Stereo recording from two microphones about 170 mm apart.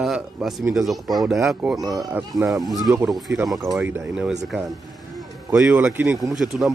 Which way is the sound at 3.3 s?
15° right (ahead or behind).